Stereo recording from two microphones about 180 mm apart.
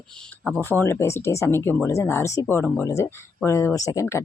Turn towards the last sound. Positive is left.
turn(degrees=15)  # may be behind; listen again after turning